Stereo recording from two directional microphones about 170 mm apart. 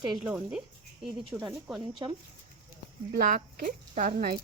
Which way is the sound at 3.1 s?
55° right (ahead or behind).